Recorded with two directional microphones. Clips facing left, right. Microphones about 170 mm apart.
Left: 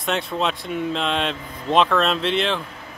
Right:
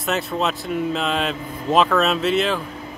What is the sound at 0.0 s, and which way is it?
Speech, 5° right (ahead or behind).